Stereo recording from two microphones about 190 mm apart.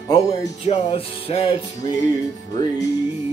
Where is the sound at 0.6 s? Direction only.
30° left (ahead or behind).